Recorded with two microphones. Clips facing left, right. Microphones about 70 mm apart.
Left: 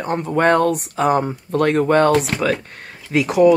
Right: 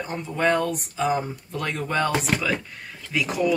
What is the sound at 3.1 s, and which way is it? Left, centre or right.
Speech, left.